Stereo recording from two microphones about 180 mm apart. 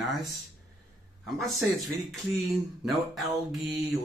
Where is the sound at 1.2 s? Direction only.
Centre (ahead or behind).